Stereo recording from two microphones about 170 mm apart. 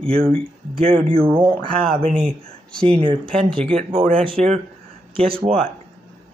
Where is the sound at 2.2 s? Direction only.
5° left (ahead or behind).